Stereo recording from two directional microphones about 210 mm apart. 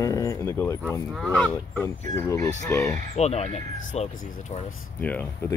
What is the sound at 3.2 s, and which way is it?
Speech, 30° left (ahead or behind).